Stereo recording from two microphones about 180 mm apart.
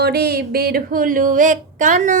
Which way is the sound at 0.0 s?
60° right (ahead or behind).